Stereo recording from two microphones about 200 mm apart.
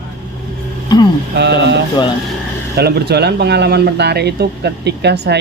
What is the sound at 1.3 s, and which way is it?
Speech, 60° right (ahead or behind).